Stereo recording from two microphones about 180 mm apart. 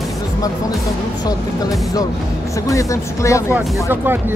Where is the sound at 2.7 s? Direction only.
15° left (ahead or behind).